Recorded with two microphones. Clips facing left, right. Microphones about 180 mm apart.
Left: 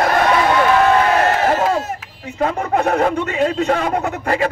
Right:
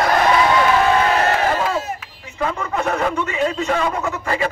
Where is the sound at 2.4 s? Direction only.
40° left (ahead or behind).